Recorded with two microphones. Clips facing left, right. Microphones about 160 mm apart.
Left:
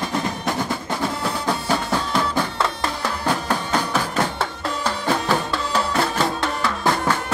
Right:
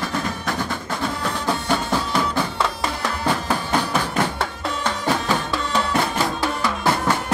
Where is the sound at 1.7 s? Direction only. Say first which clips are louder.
Even; centre (ahead or behind).